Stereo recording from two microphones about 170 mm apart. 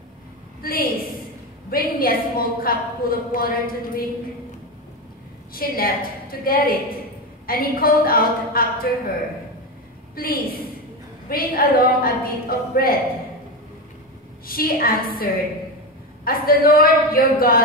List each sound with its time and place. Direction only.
0.6 s a woman's voice: 60° left (ahead or behind)
5.5 s a woman's voice: 60° left (ahead or behind)
10.1 s a woman's voice: 60° left (ahead or behind)
14.4 s a woman's voice: 60° left (ahead or behind)
16.3 s a woman's voice: 60° left (ahead or behind)